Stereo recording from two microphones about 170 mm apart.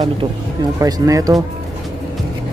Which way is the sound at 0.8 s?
20° right (ahead or behind).